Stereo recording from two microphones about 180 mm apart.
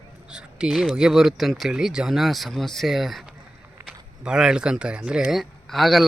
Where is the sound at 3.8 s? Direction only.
15° right (ahead or behind).